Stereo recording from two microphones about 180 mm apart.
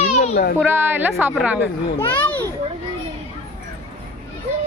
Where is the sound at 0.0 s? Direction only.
40° left (ahead or behind).